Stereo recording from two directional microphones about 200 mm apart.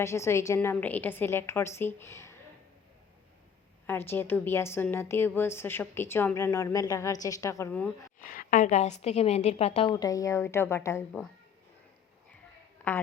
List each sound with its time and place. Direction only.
0.0 s a woman's voice: 15° left (ahead or behind)
3.8 s a woman's voice: 10° left (ahead or behind)
8.2 s a woman's voice: 40° left (ahead or behind)
9.9 s a woman's voice: 20° left (ahead or behind)